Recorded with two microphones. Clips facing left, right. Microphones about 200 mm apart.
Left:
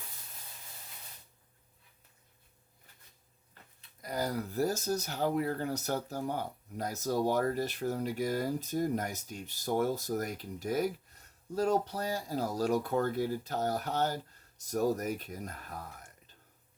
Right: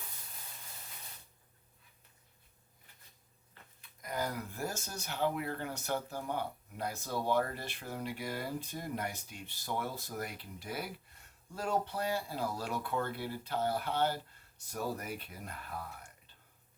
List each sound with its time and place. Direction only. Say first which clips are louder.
3.8 s speech: left 2 dB; 35° left (ahead or behind)